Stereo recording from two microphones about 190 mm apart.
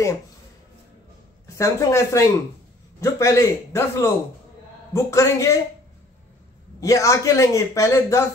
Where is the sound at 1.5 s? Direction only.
15° left (ahead or behind).